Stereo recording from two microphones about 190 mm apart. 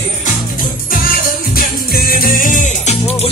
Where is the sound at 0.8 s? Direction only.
50° left (ahead or behind); by 3.2 s 35° left (ahead or behind).